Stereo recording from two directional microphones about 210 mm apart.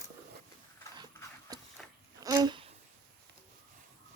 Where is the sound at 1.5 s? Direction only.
20° right (ahead or behind).